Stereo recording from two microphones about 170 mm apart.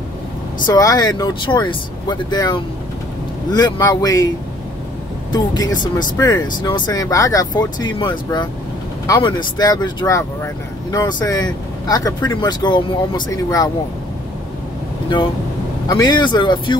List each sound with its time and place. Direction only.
0.7 s speech: 20° left (ahead or behind)
5.3 s speech: 25° left (ahead or behind)
15.9 s speech: 25° left (ahead or behind)